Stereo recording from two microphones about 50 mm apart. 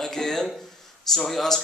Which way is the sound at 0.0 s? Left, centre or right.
Centre.